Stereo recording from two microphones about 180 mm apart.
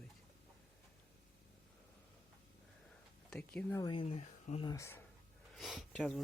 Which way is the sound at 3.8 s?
25° left (ahead or behind).